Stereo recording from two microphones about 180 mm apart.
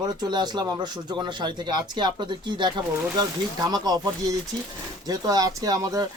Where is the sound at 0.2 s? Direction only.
25° right (ahead or behind).